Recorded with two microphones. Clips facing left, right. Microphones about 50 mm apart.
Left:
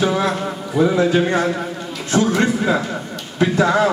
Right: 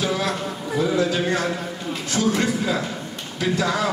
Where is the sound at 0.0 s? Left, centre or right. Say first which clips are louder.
Left 5 dB; left.